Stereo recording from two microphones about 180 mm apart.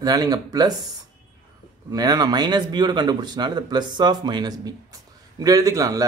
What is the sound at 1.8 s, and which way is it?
Speech, 20° right (ahead or behind).